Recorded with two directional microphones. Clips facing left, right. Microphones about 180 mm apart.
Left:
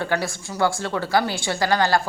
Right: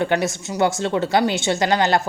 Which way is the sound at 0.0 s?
20° right (ahead or behind).